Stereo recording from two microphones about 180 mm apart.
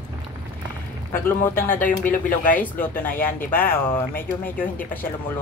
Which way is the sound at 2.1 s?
50° left (ahead or behind).